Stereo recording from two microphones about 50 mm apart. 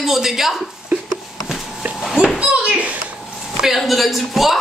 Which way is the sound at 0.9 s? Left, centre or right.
Right.